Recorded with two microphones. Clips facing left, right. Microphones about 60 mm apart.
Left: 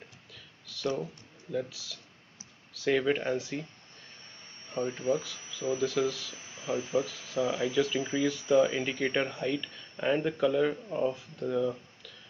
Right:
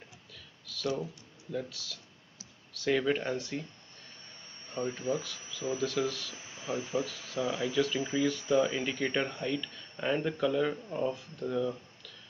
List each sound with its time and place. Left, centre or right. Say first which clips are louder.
0.3 s a sound: right 1 dB; centre
1.5 s speech: left 3 dB; centre
4.7 s speech: left 3 dB; left
5.2 s speech: left 2 dB; centre
6.3 s a sound: left 1 dB; right
7.4 s speech: left 1 dB; centre
8.0 s speech: left 1 dB; left
8.3 s speech: left 5 dB; centre